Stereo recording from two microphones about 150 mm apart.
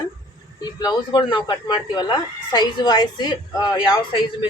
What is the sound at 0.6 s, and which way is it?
Speech, 25° left (ahead or behind).